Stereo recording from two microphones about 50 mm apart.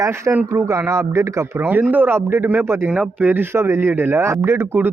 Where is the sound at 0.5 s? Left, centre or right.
Right.